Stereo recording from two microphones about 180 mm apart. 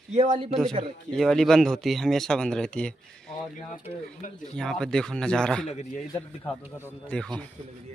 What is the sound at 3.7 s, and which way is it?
Speech, 45° left (ahead or behind).